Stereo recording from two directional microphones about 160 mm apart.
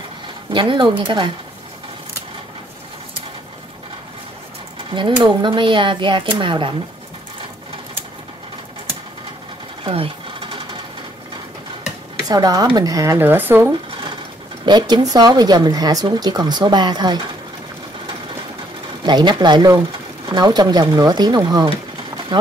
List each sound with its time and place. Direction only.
0.5 s speech: 30° right (ahead or behind)
4.9 s speech: 30° right (ahead or behind)
9.8 s sewing machine: 35° right (ahead or behind)
12.3 s speech: 25° right (ahead or behind)
14.7 s speech: 25° right (ahead or behind)
19.0 s speech: 30° right (ahead or behind)
22.3 s run: 30° right (ahead or behind)